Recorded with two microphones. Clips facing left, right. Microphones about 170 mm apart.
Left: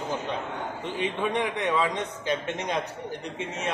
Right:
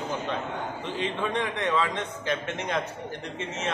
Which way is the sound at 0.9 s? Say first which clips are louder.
Left 2 dB; 15° left (ahead or behind).